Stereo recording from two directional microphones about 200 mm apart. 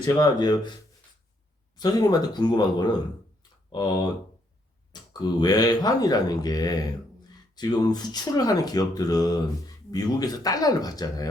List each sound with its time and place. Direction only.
0.0 s speech: 20° left (ahead or behind)
1.8 s speech: 20° left (ahead or behind)